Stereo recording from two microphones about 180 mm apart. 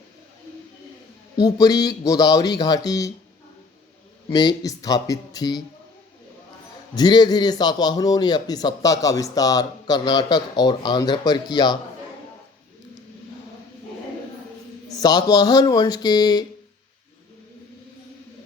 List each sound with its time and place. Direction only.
1.4 s a man's voice: 20° left (ahead or behind)
4.3 s a man's voice: 20° left (ahead or behind)
6.9 s a man's voice: 25° left (ahead or behind)
15.0 s a man's voice: 20° left (ahead or behind)